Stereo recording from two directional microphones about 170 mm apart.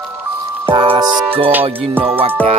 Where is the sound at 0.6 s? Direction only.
30° right (ahead or behind).